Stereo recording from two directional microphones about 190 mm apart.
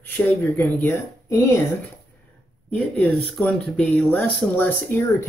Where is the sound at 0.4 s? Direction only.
10° left (ahead or behind).